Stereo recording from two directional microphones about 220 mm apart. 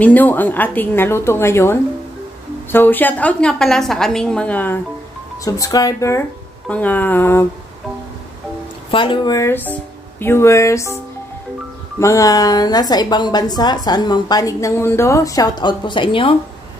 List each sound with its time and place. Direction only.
0.0 s a woman's voice: 10° left (ahead or behind)
8.9 s a woman's voice: 20° left (ahead or behind)
12.0 s a woman's voice: 15° left (ahead or behind)